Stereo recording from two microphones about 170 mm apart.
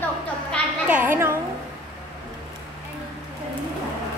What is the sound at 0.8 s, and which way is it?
Speech, 10° right (ahead or behind).